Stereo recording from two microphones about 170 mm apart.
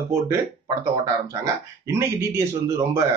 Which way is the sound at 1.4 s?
15° right (ahead or behind).